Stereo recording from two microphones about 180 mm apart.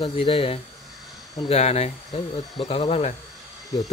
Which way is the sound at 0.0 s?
30° left (ahead or behind).